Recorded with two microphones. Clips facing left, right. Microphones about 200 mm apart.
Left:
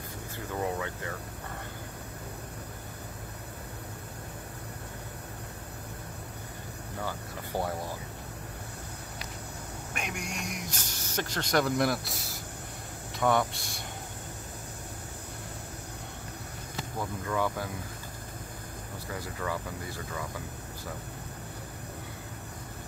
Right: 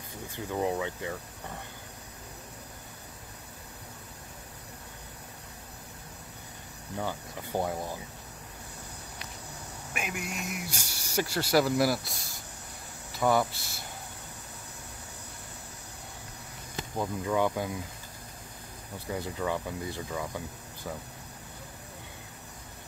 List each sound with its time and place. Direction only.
0.6 s speech: 15° right (ahead or behind)
7.1 s speech: 15° right (ahead or behind)
9.9 s speech: 5° right (ahead or behind)
17.0 s speech: 20° right (ahead or behind)
19.0 s speech: 20° right (ahead or behind)